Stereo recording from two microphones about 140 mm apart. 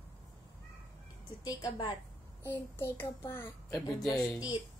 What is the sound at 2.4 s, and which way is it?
A child's voice, 15° left (ahead or behind).